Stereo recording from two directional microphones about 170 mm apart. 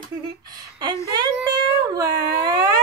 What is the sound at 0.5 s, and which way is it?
Speech, 25° right (ahead or behind).